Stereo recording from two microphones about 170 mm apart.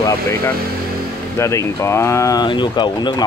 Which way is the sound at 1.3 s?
15° left (ahead or behind).